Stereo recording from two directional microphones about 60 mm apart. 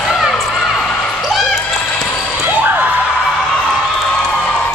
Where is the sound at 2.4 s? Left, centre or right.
Right.